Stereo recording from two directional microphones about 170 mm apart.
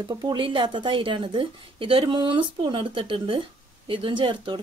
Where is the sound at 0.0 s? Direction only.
25° right (ahead or behind).